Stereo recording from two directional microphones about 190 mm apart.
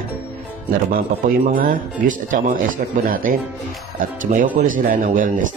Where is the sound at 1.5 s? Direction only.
45° right (ahead or behind).